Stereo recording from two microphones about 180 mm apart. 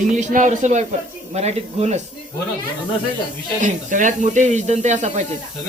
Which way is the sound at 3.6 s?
45° right (ahead or behind).